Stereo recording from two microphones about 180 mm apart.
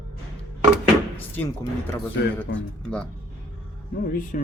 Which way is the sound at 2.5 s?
90° left.